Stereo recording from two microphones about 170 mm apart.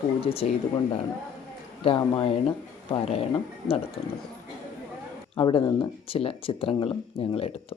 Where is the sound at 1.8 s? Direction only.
35° left (ahead or behind).